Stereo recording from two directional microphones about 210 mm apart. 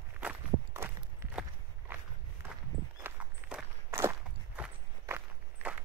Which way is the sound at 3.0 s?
10° right (ahead or behind).